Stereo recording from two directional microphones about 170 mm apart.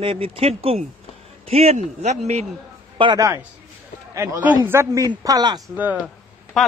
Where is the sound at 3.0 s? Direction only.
25° right (ahead or behind).